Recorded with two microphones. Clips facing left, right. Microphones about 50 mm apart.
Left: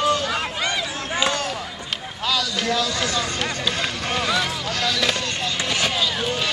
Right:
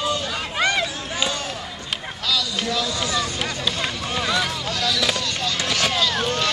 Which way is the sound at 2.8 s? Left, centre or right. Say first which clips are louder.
Left 1 dB; left.